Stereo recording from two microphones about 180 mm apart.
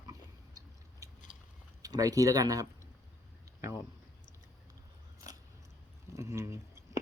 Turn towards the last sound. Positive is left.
turn(degrees=-15)  # may be behind; listen again after turning